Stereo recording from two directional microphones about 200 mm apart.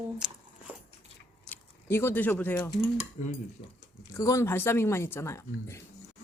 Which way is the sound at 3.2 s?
40° left (ahead or behind).